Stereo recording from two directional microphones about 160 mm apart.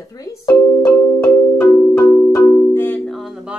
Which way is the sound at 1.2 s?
15° left (ahead or behind).